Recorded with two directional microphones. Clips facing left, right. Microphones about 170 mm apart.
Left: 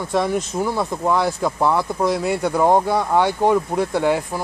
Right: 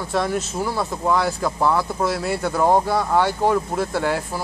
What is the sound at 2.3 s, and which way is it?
Speech, 15° left (ahead or behind).